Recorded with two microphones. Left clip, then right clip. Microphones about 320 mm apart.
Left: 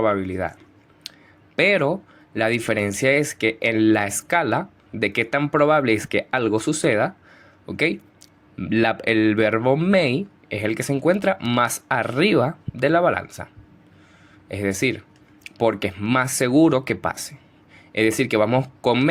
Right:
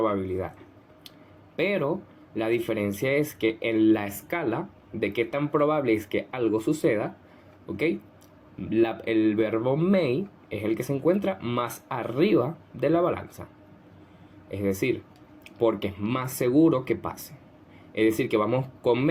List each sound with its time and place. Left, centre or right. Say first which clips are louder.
0.2 s speech: left 4 dB; left
1.5 s speech: left 8 dB; left
14.4 s speech: left 4 dB; left